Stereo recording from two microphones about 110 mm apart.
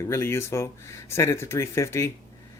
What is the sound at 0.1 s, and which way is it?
Speech, 20° left (ahead or behind).